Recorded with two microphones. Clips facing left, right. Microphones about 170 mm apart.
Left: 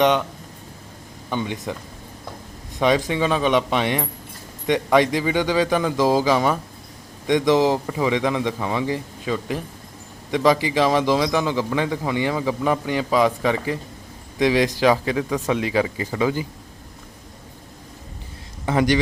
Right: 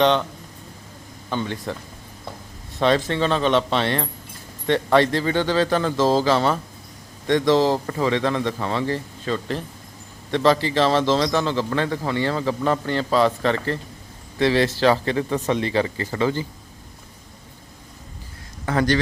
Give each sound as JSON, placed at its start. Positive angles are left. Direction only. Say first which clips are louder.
{"t": 0.0, "sound": "a man's voice", "louder": "even", "side_deg": 15}
{"t": 1.3, "sound": "a man's voice", "louder": "even", "side_deg": 15}
{"t": 2.7, "sound": "a man's voice", "louder": "even", "side_deg": 15}
{"t": 18.6, "sound": "a man's voice", "louder": "left 1 dB", "side_deg": 20}